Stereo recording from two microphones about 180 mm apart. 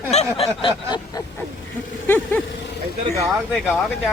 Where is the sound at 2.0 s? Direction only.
10° left (ahead or behind).